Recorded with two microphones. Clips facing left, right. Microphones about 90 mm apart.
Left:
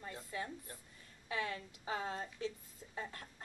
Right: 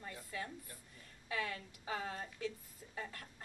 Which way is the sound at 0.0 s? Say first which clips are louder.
Left 2 dB; 25° left (ahead or behind).